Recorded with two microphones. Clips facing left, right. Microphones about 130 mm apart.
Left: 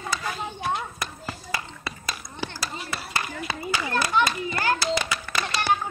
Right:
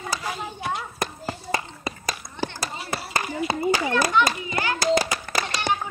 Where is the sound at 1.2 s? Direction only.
45° right (ahead or behind).